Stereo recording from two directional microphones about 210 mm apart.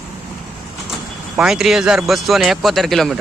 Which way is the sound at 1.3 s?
5° right (ahead or behind).